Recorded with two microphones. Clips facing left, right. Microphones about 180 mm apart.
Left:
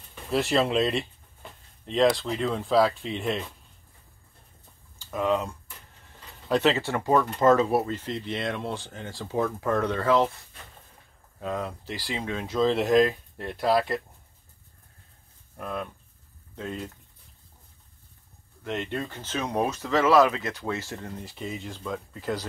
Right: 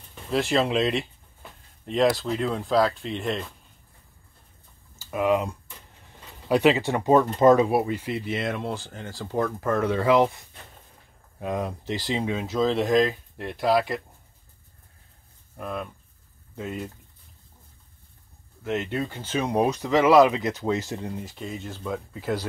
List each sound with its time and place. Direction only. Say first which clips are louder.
0.3 s speech: right 1 dB; centre (ahead or behind)
4.9 s speech: right 3 dB; 5° right (ahead or behind)
15.5 s speech: right 1 dB; 5° right (ahead or behind)
18.6 s speech: right 3 dB; 5° right (ahead or behind)
21.2 s speech: right 1 dB; centre (ahead or behind)